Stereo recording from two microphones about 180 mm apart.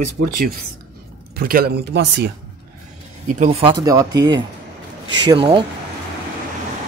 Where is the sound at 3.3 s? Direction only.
35° right (ahead or behind).